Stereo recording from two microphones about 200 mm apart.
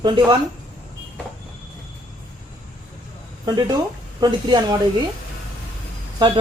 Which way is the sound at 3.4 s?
20° right (ahead or behind).